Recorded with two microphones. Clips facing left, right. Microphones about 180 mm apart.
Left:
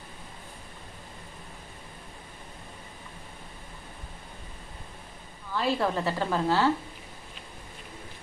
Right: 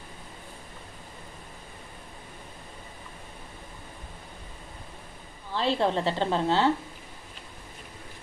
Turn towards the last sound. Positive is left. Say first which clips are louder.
# right 1 dB
turn(degrees=-25)  # may be behind; listen again after turning